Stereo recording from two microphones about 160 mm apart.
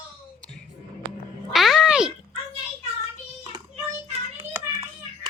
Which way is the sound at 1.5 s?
Centre (ahead or behind).